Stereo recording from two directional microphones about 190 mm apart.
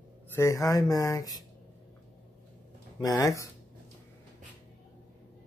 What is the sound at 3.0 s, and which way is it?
Speech, 20° left (ahead or behind).